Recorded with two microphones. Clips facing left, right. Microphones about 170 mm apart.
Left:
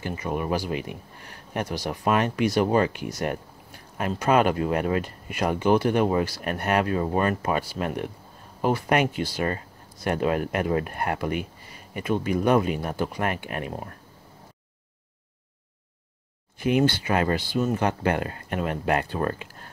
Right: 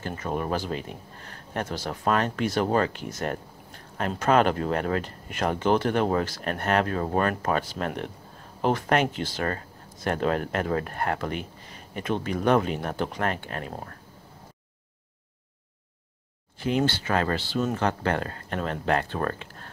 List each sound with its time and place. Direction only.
0.0 s speech: 10° left (ahead or behind)
16.5 s speech: 15° left (ahead or behind)